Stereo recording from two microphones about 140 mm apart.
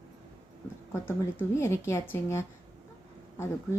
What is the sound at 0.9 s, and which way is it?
A woman's voice, 20° left (ahead or behind).